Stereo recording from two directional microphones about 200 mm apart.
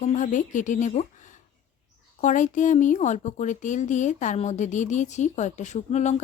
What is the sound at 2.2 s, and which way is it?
Speech, 40° left (ahead or behind).